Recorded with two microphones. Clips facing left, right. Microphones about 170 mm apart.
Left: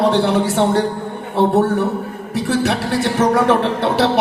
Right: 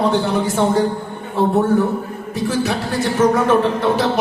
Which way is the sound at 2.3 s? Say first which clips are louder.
Left 2 dB; 70° left (ahead or behind).